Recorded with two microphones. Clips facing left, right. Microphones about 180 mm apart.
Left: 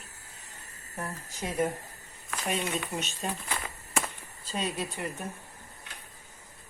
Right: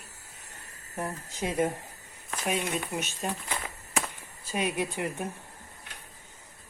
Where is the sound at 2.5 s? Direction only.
5° right (ahead or behind).